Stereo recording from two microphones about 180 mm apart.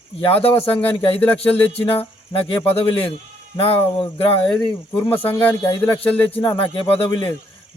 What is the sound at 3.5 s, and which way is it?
Speech, 30° left (ahead or behind).